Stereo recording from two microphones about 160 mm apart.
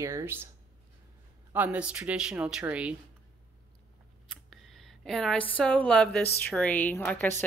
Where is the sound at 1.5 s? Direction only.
10° right (ahead or behind).